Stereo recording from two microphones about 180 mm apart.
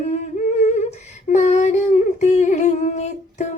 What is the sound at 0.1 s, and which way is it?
Humming, 40° left (ahead or behind).